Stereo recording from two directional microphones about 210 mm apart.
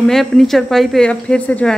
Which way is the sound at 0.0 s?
Centre (ahead or behind).